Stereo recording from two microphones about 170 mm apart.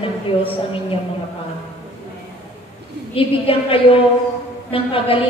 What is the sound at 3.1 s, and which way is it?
A woman's voice, 35° left (ahead or behind).